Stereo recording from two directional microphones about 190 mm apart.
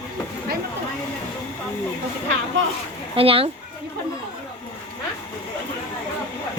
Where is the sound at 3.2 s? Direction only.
30° right (ahead or behind).